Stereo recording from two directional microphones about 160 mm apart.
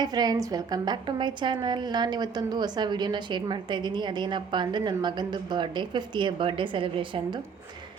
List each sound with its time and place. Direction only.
0.0 s a woman's voice: 25° right (ahead or behind)